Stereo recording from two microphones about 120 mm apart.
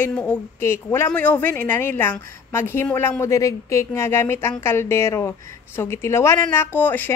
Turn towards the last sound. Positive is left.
turn(degrees=15)  # may be behind; listen again after turning